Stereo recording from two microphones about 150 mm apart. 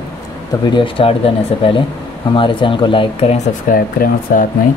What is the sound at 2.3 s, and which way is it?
Speech, 35° left (ahead or behind).